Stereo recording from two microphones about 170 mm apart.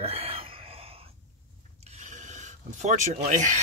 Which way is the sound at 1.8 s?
40° right (ahead or behind).